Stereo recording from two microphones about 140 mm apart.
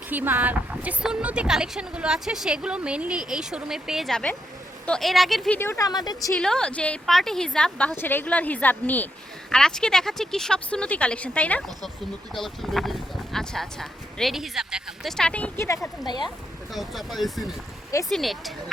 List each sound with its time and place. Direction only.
0.1 s a woman's voice: 15° right (ahead or behind)
5.5 s speech: 20° left (ahead or behind)
6.3 s a woman's voice: 5° left (ahead or behind)
15.6 s speech: 20° left (ahead or behind)
16.7 s a woman's voice: centre (ahead or behind)